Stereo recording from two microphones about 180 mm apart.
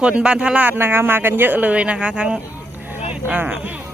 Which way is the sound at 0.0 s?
5° right (ahead or behind).